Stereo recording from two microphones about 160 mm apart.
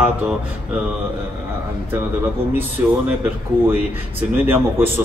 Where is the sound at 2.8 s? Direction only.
15° right (ahead or behind).